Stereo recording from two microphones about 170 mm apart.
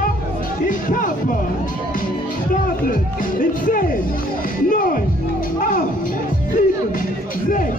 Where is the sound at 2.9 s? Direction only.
55° left (ahead or behind).